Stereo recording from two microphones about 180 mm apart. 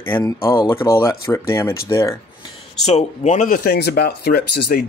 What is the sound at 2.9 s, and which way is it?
Speech, 40° left (ahead or behind).